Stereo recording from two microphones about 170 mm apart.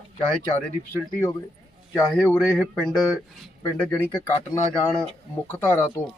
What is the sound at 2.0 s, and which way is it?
Speech, centre (ahead or behind).